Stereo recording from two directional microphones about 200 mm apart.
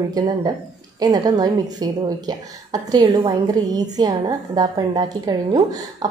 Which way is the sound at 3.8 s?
20° right (ahead or behind).